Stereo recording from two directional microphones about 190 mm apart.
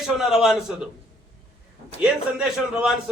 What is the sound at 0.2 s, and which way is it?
Speech, centre (ahead or behind).